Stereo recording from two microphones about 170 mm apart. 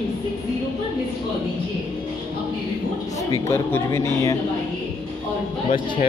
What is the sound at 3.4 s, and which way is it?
Speech, 15° left (ahead or behind).